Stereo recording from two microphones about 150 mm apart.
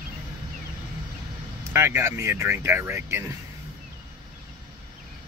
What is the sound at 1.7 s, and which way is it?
Speech, 15° right (ahead or behind).